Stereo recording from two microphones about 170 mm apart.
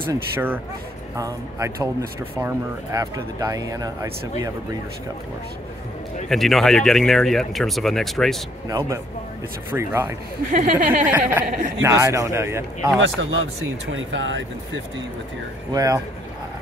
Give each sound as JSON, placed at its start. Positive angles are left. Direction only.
{"t": 0.0, "sound": "a man's voice", "side_deg": -10}
{"t": 6.2, "sound": "speech", "side_deg": 0}
{"t": 8.6, "sound": "a man's voice", "side_deg": -20}
{"t": 10.5, "sound": "speech", "side_deg": -50}
{"t": 11.1, "sound": "a man's voice", "side_deg": -10}
{"t": 11.4, "sound": "speech", "side_deg": -50}
{"t": 11.8, "sound": "a man's voice", "side_deg": -15}
{"t": 13.0, "sound": "speech", "side_deg": -90}
{"t": 15.7, "sound": "speech", "side_deg": -20}